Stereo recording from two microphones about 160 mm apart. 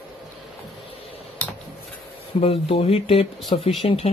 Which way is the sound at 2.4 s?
35° left (ahead or behind).